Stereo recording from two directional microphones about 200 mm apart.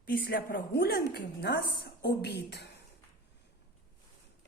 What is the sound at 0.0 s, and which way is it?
A woman's voice, 45° left (ahead or behind).